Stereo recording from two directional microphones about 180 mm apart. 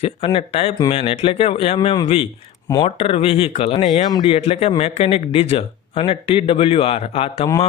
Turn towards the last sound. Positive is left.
turn(degrees=30)  # may be behind; listen again after turning